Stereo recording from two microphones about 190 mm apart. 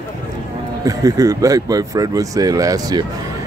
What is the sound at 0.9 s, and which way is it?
Speech, 15° right (ahead or behind).